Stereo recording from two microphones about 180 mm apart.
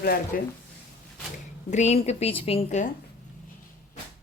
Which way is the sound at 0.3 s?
55° left (ahead or behind).